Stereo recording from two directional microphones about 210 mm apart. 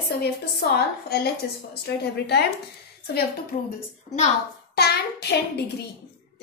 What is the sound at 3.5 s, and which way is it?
Speech, 40° left (ahead or behind).